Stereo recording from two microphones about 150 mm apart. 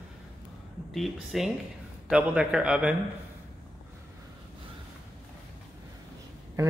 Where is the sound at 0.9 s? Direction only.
Centre (ahead or behind).